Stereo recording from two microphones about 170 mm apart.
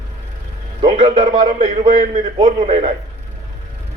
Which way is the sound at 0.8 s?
30° right (ahead or behind).